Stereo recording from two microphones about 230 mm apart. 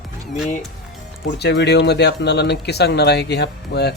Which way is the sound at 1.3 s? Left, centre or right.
Left.